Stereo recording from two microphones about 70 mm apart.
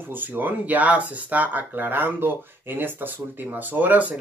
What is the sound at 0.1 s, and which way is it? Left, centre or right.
Speech, right.